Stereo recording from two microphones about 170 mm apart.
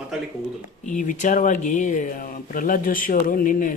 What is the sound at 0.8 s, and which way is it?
Speech, 45° left (ahead or behind).